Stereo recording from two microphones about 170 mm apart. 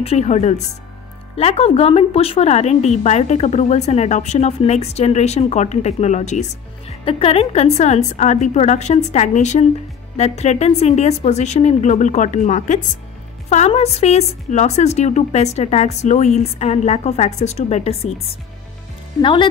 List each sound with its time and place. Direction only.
0.0 s a woman's voice: 40° left (ahead or behind)
19.2 s speech: 30° left (ahead or behind)